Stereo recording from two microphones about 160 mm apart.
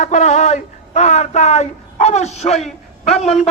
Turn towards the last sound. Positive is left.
turn(degrees=40)  # may be behind; listen again after turning